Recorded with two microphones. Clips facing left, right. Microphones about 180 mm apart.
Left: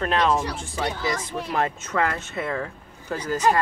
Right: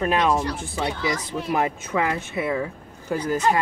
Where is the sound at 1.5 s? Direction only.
10° right (ahead or behind).